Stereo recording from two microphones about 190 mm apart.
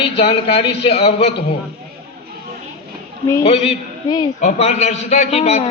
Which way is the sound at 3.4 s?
30° left (ahead or behind).